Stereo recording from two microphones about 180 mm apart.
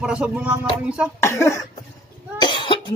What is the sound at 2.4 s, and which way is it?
Cough, 25° left (ahead or behind).